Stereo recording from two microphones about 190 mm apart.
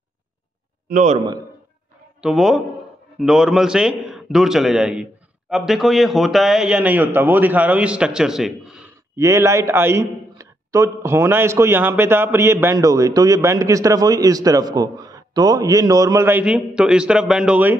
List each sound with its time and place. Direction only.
0.8 s a man's voice: 40° right (ahead or behind)
2.2 s a man's voice: centre (ahead or behind)
9.1 s a man's voice: 15° right (ahead or behind)